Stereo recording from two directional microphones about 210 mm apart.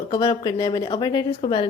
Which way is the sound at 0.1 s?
20° left (ahead or behind).